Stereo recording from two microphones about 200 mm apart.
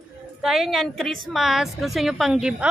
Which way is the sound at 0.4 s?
Centre (ahead or behind).